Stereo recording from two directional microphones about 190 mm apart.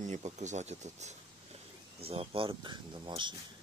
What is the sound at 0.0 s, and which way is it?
Speech, 40° right (ahead or behind).